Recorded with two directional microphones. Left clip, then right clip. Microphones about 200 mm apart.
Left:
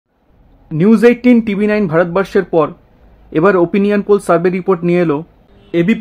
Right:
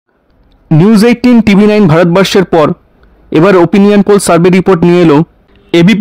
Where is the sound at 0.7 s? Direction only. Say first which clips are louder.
Right 3 dB; 50° right (ahead or behind).